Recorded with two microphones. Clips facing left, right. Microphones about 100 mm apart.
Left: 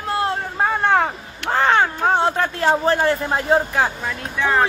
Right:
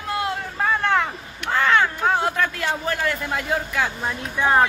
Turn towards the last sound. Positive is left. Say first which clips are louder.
# right 1 dB
turn(degrees=-25)  # may be behind; listen again after turning